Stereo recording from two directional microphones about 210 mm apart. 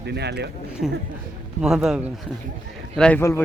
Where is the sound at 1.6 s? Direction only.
Centre (ahead or behind).